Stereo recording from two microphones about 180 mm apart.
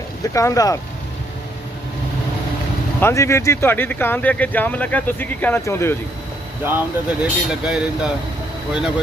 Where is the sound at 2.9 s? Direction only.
15° left (ahead or behind).